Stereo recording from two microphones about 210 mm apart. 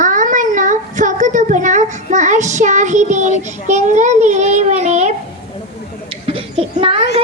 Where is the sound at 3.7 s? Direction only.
35° right (ahead or behind).